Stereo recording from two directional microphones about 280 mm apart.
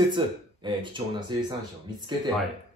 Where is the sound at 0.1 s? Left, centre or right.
Centre.